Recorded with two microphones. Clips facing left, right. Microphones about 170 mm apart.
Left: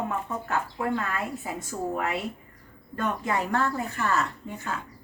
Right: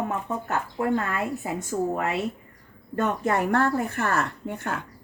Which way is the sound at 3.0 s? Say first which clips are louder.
Right 3 dB; 50° right (ahead or behind).